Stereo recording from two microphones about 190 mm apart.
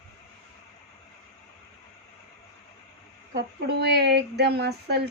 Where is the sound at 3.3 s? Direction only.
60° right (ahead or behind).